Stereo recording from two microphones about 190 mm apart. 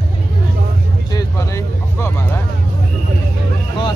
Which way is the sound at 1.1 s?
15° left (ahead or behind).